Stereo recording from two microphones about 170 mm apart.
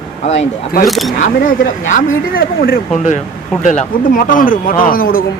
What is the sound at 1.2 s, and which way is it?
Speech, 50° left (ahead or behind).